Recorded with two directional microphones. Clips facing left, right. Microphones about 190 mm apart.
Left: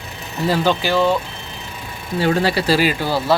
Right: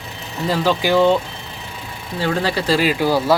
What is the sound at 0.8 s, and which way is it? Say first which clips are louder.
Speech: right 3 dB; 15° right (ahead or behind).